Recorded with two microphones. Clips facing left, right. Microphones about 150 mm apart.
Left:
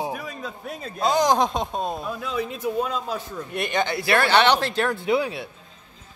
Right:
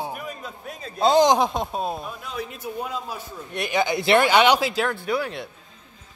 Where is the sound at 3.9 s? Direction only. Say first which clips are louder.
Right 2 dB; 20° right (ahead or behind); by 5.5 s 5° left (ahead or behind).